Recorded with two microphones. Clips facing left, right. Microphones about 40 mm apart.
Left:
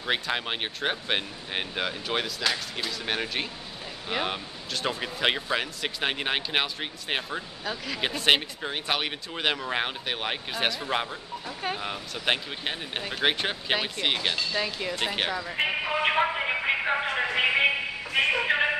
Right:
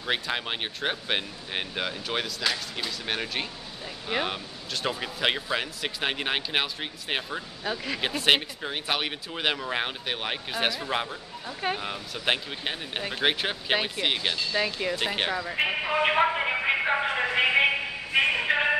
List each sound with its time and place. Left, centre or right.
0.0 s speech: centre
7.6 s speech: centre
14.5 s speech: centre
18.1 s speech: centre